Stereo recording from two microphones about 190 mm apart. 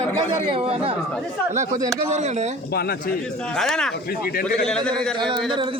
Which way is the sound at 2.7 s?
55° left (ahead or behind).